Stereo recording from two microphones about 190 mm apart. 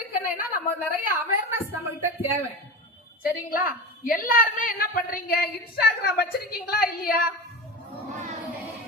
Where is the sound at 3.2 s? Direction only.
50° left (ahead or behind).